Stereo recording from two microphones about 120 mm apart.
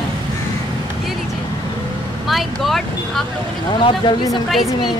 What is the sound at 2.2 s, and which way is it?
Vehicle, centre (ahead or behind).